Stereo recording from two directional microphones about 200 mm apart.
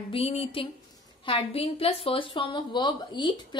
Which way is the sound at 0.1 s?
30° left (ahead or behind).